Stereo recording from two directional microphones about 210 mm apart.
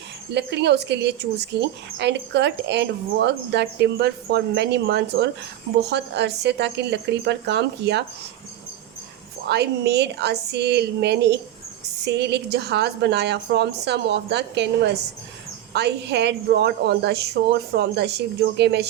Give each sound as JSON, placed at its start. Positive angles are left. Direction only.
{"t": 0.3, "sound": "a woman's voice", "side_deg": -55}
{"t": 9.5, "sound": "a woman's voice", "side_deg": -50}